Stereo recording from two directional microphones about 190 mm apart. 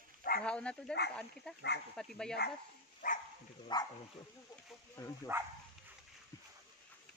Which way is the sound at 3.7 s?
20° left (ahead or behind).